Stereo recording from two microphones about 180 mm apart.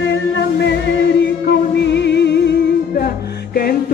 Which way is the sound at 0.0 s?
80° left.